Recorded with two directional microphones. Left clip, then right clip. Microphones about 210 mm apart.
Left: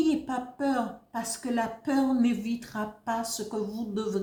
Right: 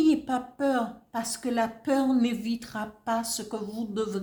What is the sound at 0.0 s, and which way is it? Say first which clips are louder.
A woman's voice: right 3 dB; 40° right (ahead or behind).